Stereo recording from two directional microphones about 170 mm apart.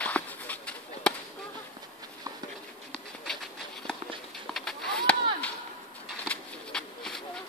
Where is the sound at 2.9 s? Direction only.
5° left (ahead or behind).